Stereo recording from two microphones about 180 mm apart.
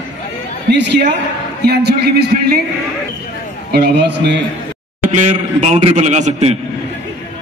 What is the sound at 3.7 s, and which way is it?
Speech, 65° right (ahead or behind).